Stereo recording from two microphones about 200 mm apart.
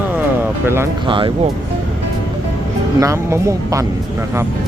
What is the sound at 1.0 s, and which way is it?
Speech, 25° right (ahead or behind).